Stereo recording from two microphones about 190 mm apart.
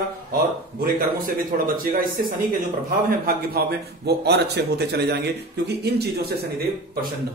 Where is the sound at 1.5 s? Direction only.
50° right (ahead or behind).